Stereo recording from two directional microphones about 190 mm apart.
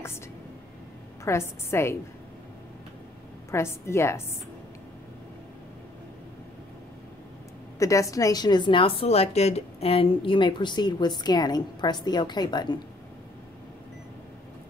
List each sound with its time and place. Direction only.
1.2 s a woman's voice: 15° left (ahead or behind)
3.5 s a woman's voice: 15° left (ahead or behind)
7.8 s a woman's voice: 15° left (ahead or behind)